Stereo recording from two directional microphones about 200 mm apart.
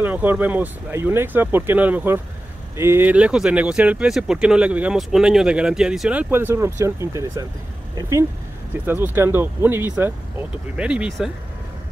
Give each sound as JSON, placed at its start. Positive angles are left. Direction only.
{"t": 0.0, "sound": "speech", "side_deg": -10}